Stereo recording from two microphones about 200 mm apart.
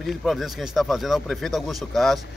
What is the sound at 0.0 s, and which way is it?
Speech, centre (ahead or behind).